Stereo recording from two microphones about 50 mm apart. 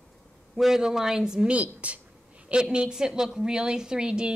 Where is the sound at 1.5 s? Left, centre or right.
Right.